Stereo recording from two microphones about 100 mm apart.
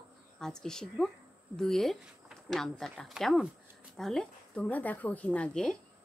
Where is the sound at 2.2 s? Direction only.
5° left (ahead or behind).